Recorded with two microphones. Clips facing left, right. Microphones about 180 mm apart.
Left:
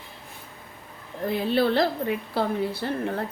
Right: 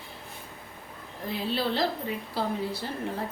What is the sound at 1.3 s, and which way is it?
A woman's voice, 55° left (ahead or behind).